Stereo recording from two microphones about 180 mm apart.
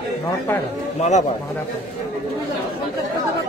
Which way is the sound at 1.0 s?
40° left (ahead or behind).